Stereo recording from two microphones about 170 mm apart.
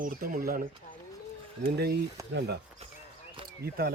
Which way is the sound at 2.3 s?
80° right.